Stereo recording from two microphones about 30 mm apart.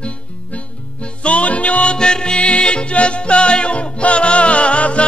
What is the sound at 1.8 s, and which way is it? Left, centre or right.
Music, left.